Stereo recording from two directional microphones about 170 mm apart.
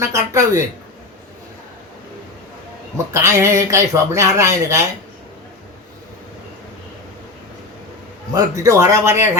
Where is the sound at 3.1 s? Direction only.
15° right (ahead or behind).